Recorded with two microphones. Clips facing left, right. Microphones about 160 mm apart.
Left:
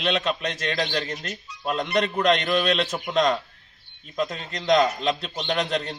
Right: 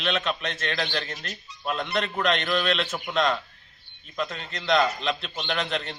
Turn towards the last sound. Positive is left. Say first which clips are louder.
# left 4 dB
turn(degrees=40)  # may be behind; listen again after turning